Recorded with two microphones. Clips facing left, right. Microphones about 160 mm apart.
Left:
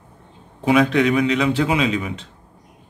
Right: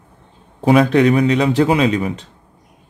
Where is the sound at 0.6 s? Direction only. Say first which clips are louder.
Right 4 dB; 40° right (ahead or behind).